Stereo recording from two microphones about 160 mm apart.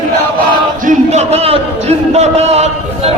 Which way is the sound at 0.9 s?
45° right (ahead or behind).